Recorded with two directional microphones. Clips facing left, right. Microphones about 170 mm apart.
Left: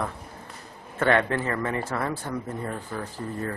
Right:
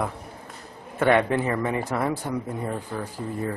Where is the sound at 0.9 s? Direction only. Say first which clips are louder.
Right 3 dB; 15° right (ahead or behind).